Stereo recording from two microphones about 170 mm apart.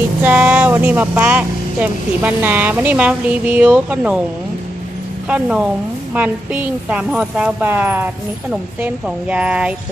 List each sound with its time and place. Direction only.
0.2 s speech: 10° right (ahead or behind)
5.3 s speech: 5° right (ahead or behind)